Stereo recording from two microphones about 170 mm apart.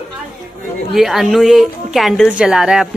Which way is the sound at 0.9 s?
Centre (ahead or behind).